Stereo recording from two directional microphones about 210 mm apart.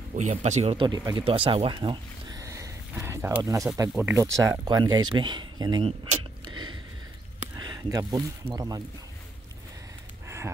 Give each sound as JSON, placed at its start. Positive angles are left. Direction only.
{"t": 0.1, "sound": "speech", "side_deg": -35}
{"t": 10.2, "sound": "dog", "side_deg": -15}